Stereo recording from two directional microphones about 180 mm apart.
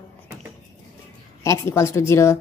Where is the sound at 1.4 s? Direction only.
15° left (ahead or behind).